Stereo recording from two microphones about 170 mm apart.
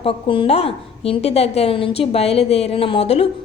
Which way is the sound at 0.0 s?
30° left (ahead or behind).